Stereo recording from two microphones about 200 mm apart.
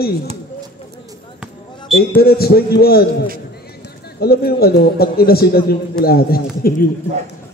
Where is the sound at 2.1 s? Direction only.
50° left (ahead or behind).